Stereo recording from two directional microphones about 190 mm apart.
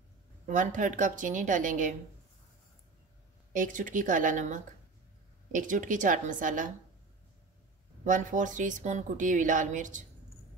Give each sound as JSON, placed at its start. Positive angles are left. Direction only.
{"t": 0.5, "sound": "speech", "side_deg": -40}
{"t": 3.5, "sound": "speech", "side_deg": -45}
{"t": 8.0, "sound": "speech", "side_deg": -40}